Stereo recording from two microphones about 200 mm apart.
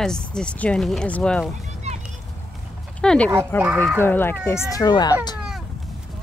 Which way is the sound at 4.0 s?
10° left (ahead or behind).